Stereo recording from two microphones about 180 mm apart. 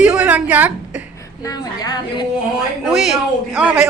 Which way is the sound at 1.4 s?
20° left (ahead or behind).